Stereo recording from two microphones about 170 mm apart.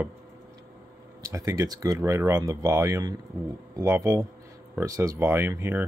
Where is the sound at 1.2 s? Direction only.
20° right (ahead or behind).